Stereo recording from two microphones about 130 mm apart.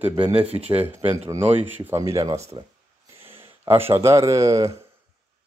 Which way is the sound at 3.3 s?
15° right (ahead or behind).